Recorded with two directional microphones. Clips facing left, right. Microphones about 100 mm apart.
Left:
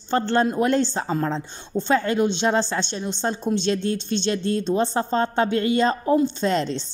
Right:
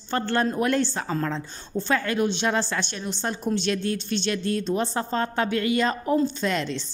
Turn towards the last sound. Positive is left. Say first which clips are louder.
# left 4 dB
turn(degrees=30)  # may be behind; listen again after turning